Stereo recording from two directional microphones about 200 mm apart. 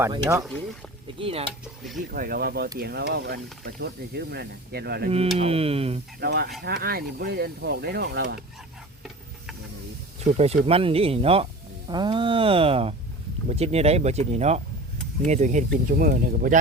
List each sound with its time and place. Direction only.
0.1 s speech: 15° right (ahead or behind)
1.2 s speech: 30° right (ahead or behind)
2.0 s speech: 45° right (ahead or behind)
5.0 s speech: 30° right (ahead or behind)
6.1 s speech: 55° right (ahead or behind)
10.2 s speech: 30° right (ahead or behind)